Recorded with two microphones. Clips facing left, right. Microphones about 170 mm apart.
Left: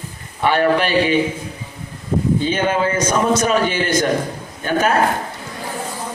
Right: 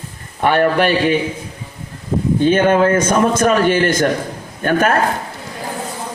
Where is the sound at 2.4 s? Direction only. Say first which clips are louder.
Right 6 dB; 55° right (ahead or behind).